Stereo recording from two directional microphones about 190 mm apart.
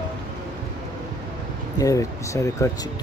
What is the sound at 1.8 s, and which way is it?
Speech, 15° left (ahead or behind).